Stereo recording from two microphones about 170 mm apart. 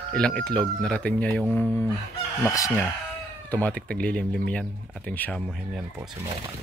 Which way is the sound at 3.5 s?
10° left (ahead or behind).